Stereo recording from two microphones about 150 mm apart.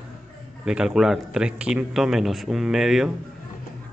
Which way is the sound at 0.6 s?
5° right (ahead or behind).